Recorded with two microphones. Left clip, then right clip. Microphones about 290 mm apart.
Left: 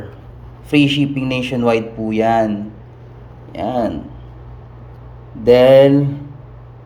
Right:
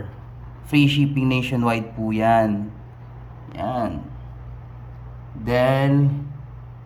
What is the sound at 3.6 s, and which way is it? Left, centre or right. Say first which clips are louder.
Speech: left 6 dB; right.